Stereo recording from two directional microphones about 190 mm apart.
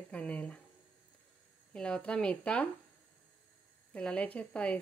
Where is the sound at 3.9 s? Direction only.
5° left (ahead or behind).